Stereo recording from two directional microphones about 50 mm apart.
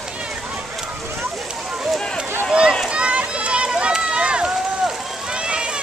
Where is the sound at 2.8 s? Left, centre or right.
Right.